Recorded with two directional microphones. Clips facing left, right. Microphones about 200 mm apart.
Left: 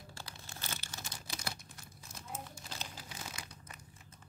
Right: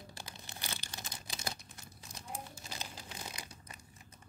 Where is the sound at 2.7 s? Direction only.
15° right (ahead or behind).